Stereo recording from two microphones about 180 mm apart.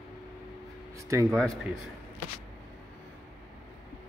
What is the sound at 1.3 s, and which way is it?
Speech, 5° left (ahead or behind).